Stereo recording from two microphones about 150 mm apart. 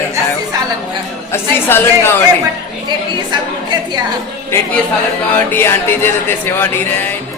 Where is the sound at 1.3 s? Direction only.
15° left (ahead or behind).